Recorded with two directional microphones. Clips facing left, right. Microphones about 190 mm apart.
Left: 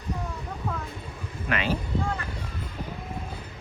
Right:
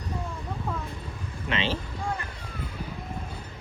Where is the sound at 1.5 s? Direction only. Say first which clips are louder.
Left 1 dB; 25° right (ahead or behind).